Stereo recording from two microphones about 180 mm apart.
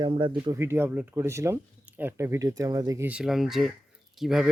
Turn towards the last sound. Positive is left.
turn(degrees=-5)  # may be behind; listen again after turning